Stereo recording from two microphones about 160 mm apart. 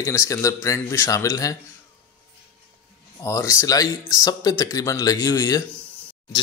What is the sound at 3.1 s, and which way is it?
Speech, 20° left (ahead or behind).